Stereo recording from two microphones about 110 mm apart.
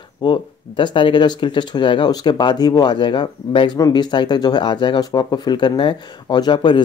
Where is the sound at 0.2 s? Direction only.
45° left (ahead or behind).